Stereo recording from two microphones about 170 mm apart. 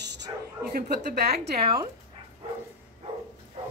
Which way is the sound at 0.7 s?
70° right (ahead or behind).